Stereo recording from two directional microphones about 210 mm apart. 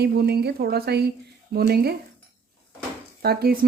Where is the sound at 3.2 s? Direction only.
45° right (ahead or behind).